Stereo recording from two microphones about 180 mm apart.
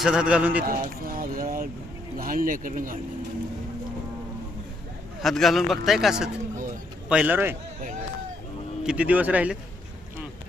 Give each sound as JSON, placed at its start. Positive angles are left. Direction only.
{"t": 0.0, "sound": "a man's voice", "side_deg": -5}
{"t": 0.6, "sound": "speech", "side_deg": -50}
{"t": 5.2, "sound": "a man's voice", "side_deg": 0}
{"t": 8.8, "sound": "speech", "side_deg": -5}